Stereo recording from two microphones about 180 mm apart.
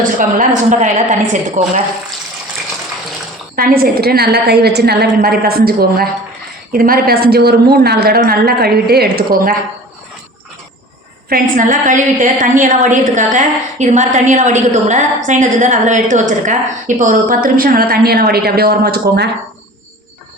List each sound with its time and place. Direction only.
0.0 s a woman's voice: 45° right (ahead or behind)
3.5 s a woman's voice: 55° right (ahead or behind)
11.3 s a woman's voice: 45° right (ahead or behind); by 19.3 s 65° right (ahead or behind)